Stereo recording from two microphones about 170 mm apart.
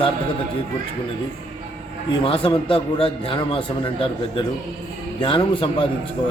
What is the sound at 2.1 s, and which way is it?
A man's voice, 30° left (ahead or behind).